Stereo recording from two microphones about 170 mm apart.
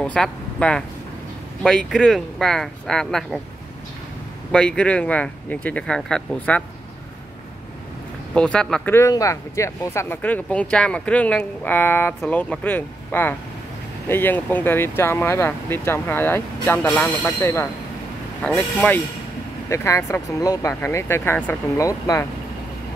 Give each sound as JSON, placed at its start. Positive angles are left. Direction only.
{"t": 0.0, "sound": "speech", "side_deg": 5}
{"t": 4.5, "sound": "speech", "side_deg": 5}
{"t": 8.4, "sound": "speech", "side_deg": 5}
{"t": 8.9, "sound": "speech", "side_deg": 20}